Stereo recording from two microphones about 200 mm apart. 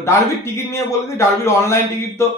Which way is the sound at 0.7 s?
15° left (ahead or behind).